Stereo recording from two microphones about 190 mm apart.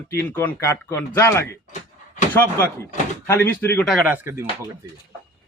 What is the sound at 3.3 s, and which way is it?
Speech, 10° left (ahead or behind).